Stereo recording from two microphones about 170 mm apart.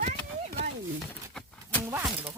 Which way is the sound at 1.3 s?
10° left (ahead or behind).